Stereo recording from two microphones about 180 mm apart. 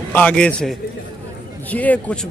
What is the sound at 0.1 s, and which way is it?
A man's voice, 5° left (ahead or behind).